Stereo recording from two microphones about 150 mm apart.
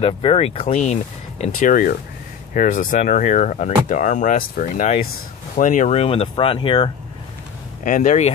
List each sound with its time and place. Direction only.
0.0 s speech: 40° left (ahead or behind)
1.4 s speech: 65° left (ahead or behind); by 6.9 s 35° left (ahead or behind)
7.8 s speech: 60° left (ahead or behind)